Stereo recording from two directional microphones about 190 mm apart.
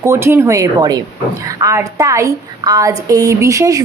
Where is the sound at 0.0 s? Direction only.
15° right (ahead or behind).